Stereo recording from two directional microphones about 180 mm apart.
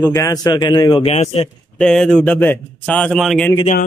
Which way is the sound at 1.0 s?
35° left (ahead or behind).